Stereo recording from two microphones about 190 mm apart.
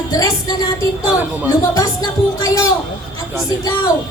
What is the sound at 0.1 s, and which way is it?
Speech, 15° left (ahead or behind).